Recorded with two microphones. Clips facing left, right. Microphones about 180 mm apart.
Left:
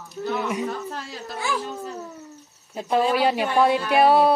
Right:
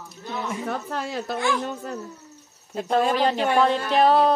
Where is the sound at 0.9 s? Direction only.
65° right (ahead or behind).